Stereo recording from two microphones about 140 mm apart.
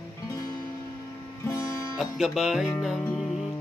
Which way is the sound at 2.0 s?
Centre (ahead or behind).